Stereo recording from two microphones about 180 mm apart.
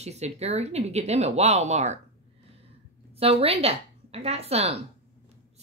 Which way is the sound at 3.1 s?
35° right (ahead or behind).